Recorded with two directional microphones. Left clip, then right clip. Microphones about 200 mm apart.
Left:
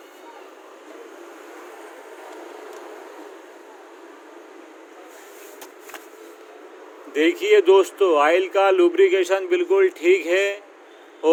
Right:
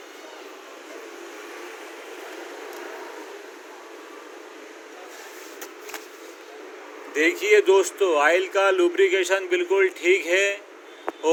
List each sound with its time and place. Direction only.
7.1 s speech: 45° left (ahead or behind)